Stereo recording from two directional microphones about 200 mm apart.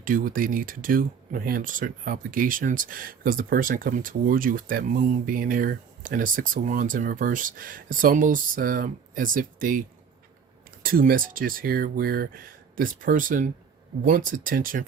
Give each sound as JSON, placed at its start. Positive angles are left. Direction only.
{"t": 0.0, "sound": "speech", "side_deg": -45}
{"t": 10.8, "sound": "speech", "side_deg": -45}